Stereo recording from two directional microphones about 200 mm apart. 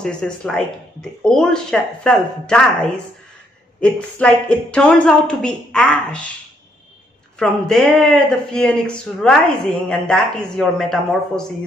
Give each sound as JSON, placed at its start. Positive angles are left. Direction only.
{"t": 0.0, "sound": "speech", "side_deg": 5}
{"t": 7.3, "sound": "speech", "side_deg": 0}